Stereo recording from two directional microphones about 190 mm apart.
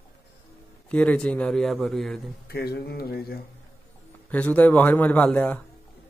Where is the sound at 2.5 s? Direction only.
55° left (ahead or behind).